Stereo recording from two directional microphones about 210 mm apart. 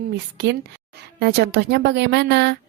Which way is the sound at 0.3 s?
55° right (ahead or behind).